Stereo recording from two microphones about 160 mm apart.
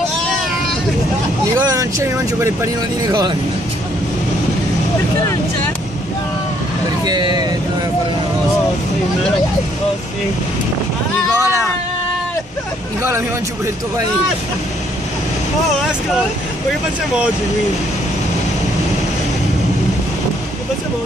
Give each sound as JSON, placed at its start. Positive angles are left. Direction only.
{"t": 1.7, "sound": "speech", "side_deg": -20}
{"t": 7.1, "sound": "speech", "side_deg": -25}
{"t": 11.3, "sound": "speech", "side_deg": -20}